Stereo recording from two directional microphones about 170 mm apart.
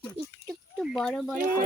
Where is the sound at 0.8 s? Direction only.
Centre (ahead or behind).